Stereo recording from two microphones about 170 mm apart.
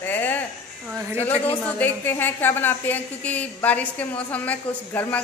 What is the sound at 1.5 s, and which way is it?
A woman's voice, 10° left (ahead or behind).